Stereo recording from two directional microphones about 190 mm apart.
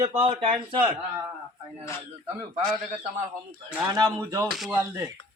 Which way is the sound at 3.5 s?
20° right (ahead or behind).